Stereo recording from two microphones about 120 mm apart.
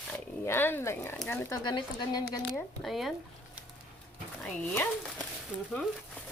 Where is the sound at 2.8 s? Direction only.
Centre (ahead or behind).